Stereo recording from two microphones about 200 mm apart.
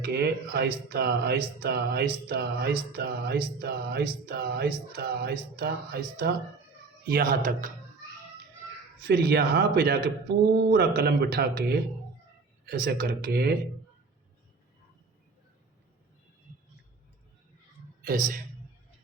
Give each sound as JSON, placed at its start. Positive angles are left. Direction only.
{"t": 0.0, "sound": "music", "side_deg": -50}
{"t": 9.0, "sound": "music", "side_deg": -50}
{"t": 12.8, "sound": "music", "side_deg": -50}
{"t": 18.0, "sound": "a man's voice", "side_deg": -45}